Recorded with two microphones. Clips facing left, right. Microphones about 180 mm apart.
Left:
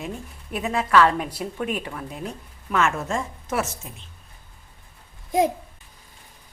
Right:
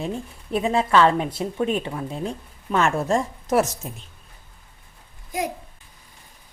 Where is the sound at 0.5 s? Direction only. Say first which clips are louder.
Right 1 dB; 30° right (ahead or behind).